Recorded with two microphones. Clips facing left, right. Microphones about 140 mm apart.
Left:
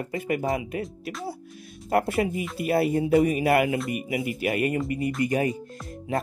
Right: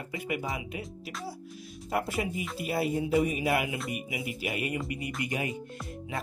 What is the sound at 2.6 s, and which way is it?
Speech, centre (ahead or behind).